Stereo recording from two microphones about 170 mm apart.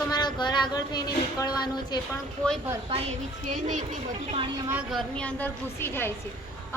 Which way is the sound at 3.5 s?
50° right (ahead or behind).